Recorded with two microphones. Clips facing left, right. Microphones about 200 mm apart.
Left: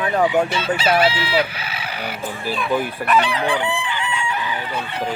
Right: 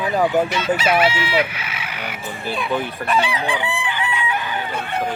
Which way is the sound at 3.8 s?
55° right (ahead or behind).